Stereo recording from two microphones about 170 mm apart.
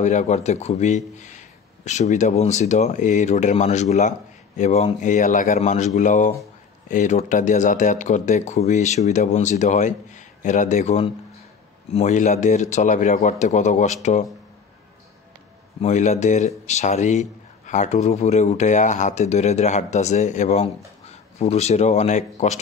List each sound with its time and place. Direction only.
0.0 s a man's voice: 45° left (ahead or behind)
15.8 s a man's voice: 40° left (ahead or behind)